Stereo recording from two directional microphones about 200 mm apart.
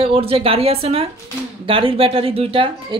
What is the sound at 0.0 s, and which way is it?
A woman's voice, 30° right (ahead or behind).